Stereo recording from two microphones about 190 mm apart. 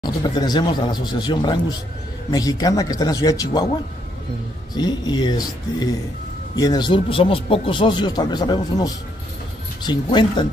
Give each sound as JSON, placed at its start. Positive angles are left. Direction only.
{"t": 0.0, "sound": "speech", "side_deg": 20}
{"t": 4.7, "sound": "speech", "side_deg": 20}